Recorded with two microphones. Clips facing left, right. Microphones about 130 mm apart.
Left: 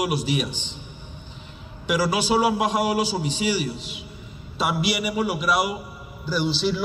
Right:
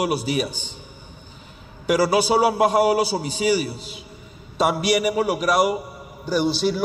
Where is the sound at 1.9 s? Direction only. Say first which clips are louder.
Right 4 dB; 40° right (ahead or behind).